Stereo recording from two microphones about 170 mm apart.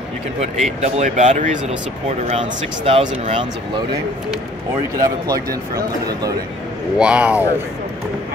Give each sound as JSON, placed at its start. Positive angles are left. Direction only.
{"t": 0.4, "sound": "speech", "side_deg": -40}
{"t": 4.9, "sound": "speech", "side_deg": -20}
{"t": 7.0, "sound": "speech", "side_deg": -5}